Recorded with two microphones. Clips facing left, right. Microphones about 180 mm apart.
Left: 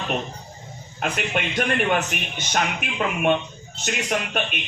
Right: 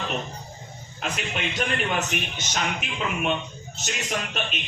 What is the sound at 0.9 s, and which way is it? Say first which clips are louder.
A man's voice: left 5 dB; 55° left (ahead or behind).